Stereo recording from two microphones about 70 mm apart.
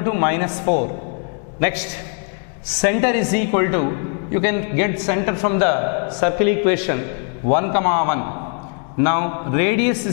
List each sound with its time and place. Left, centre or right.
0.0 s a man's voice: centre